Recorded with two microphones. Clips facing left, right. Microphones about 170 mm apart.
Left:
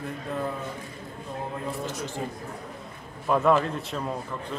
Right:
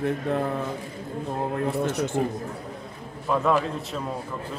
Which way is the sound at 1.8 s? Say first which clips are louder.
Right 8 dB; 50° right (ahead or behind).